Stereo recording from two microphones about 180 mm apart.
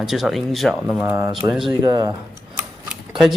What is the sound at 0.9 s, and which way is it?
Speech, 10° right (ahead or behind).